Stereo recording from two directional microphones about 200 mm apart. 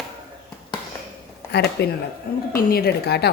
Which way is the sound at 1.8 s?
55° left (ahead or behind).